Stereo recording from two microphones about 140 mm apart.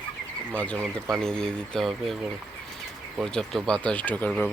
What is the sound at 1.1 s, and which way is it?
Speech, 5° left (ahead or behind).